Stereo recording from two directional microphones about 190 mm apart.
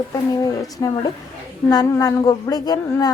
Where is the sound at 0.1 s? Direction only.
20° left (ahead or behind).